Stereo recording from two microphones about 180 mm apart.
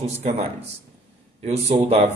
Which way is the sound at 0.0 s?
35° right (ahead or behind).